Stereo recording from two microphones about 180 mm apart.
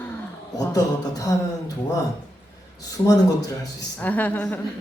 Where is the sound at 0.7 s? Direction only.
20° left (ahead or behind).